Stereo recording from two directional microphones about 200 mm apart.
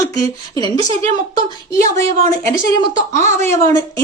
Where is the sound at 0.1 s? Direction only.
20° left (ahead or behind).